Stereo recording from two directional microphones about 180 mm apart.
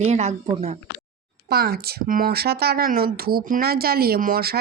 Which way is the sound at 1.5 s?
60° right (ahead or behind).